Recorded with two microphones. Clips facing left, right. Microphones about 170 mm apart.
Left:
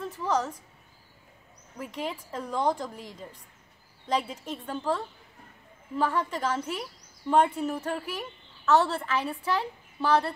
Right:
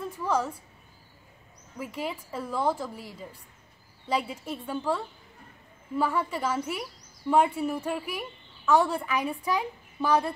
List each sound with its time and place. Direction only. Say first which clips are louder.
0.0 s speech: even; 10° right (ahead or behind)
1.8 s speech: right 1 dB; 5° right (ahead or behind)